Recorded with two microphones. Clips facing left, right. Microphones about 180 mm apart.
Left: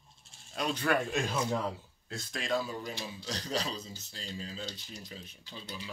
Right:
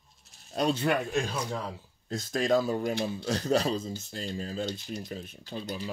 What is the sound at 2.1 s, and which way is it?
Speech, 45° right (ahead or behind).